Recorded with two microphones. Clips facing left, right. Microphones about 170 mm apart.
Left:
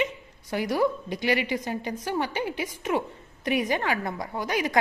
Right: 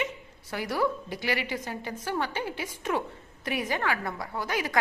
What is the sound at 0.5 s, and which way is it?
A woman's voice, 15° left (ahead or behind).